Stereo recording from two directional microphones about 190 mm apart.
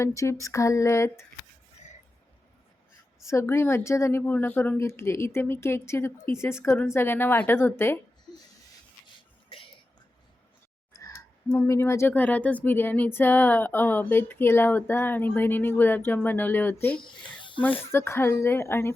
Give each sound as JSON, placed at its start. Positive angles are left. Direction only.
{"t": 0.0, "sound": "speech", "side_deg": 15}
{"t": 3.2, "sound": "speech", "side_deg": 15}
{"t": 10.9, "sound": "speech", "side_deg": 15}
{"t": 17.9, "sound": "speech", "side_deg": 15}